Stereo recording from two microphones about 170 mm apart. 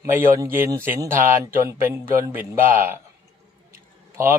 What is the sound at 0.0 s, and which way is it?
Speech, 15° right (ahead or behind).